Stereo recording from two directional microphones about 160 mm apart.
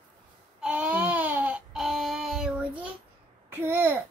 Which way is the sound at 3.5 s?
10° right (ahead or behind).